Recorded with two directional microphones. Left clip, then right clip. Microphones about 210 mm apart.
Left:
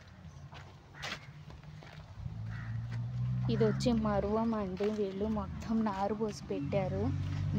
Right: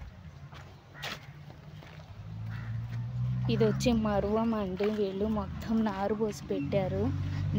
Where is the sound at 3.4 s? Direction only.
5° right (ahead or behind).